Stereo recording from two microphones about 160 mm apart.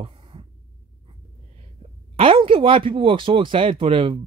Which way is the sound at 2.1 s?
35° right (ahead or behind).